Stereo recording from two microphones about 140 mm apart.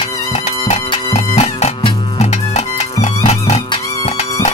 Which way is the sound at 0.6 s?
50° left (ahead or behind).